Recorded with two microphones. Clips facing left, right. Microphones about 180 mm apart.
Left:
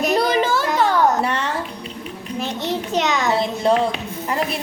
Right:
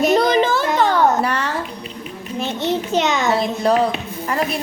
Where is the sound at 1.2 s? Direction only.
25° left (ahead or behind).